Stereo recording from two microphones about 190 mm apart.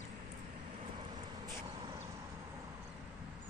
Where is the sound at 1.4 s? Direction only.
20° right (ahead or behind).